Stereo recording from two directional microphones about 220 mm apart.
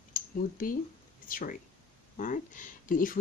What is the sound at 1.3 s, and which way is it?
Speech, 40° left (ahead or behind).